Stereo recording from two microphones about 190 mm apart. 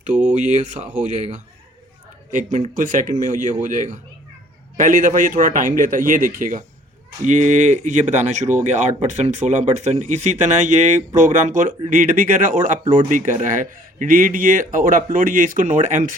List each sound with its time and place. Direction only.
0.3 s speech: 40° right (ahead or behind)